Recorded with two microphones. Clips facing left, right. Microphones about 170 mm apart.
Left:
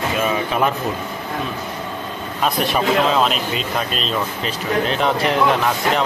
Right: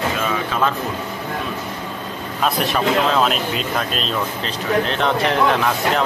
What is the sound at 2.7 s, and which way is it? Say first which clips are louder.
Speech: left 1 dB; centre (ahead or behind).